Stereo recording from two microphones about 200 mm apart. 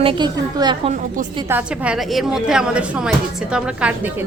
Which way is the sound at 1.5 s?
5° right (ahead or behind).